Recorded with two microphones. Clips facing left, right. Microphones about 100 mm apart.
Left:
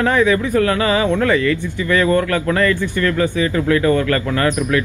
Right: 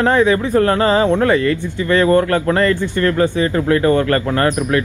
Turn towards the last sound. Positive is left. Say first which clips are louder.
# right 1 dB
turn(degrees=-35)  # may be behind; listen again after turning